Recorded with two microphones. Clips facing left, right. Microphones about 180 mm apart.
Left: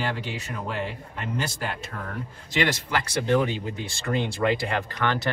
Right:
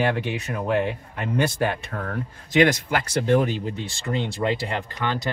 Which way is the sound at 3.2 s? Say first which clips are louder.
Right 2 dB; 45° right (ahead or behind).